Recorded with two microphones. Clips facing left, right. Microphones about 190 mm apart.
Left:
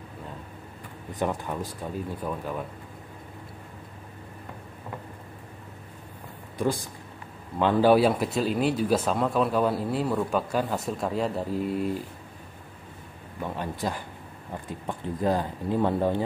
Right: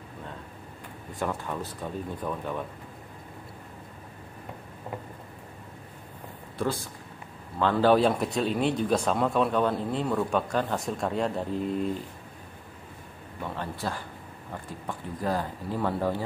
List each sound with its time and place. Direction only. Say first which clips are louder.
1.2 s speech: left 2 dB; 15° left (ahead or behind)
6.6 s speech: left 3 dB; 15° left (ahead or behind)
13.4 s speech: left 3 dB; 15° left (ahead or behind)